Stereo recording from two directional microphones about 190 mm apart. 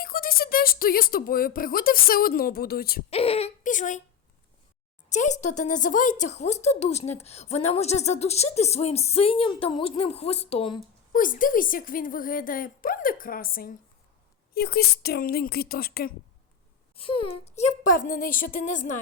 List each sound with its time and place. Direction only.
0.0 s speech: 50° left (ahead or behind)
3.1 s speech: 30° left (ahead or behind)
5.0 s speech: 40° left (ahead or behind)
11.1 s speech: 45° left (ahead or behind)
16.9 s speech: 30° left (ahead or behind)